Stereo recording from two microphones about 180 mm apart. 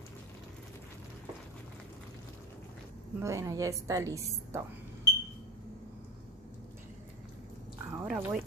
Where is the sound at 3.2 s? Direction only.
15° right (ahead or behind).